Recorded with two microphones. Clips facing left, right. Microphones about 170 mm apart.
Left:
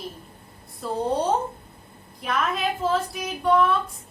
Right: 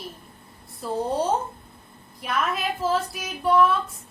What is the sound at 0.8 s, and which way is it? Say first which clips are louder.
Speech: even; 5° right (ahead or behind).